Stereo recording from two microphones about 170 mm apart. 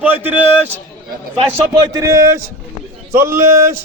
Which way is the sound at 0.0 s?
10° right (ahead or behind).